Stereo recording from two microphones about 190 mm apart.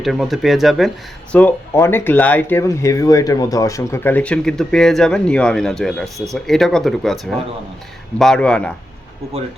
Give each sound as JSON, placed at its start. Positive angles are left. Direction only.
{"t": 0.0, "sound": "speech", "side_deg": 0}